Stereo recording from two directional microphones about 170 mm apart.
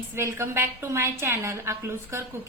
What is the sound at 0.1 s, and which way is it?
A woman's voice, 15° right (ahead or behind).